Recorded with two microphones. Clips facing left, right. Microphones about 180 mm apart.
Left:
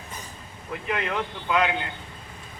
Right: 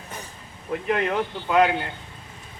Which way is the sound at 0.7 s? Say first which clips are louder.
Right 5 dB; 40° right (ahead or behind).